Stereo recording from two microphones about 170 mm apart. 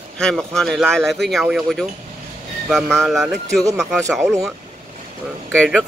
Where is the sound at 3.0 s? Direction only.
Centre (ahead or behind).